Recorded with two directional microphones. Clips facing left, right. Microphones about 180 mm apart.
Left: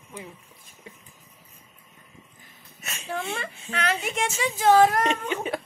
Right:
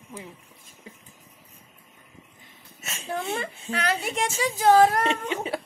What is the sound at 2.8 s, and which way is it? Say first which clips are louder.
A woman's voice: right 1 dB; 35° right (ahead or behind).